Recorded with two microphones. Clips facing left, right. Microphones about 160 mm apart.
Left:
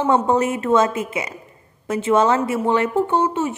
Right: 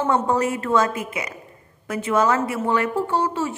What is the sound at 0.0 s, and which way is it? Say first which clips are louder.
A woman's voice: left 3 dB; 20° left (ahead or behind).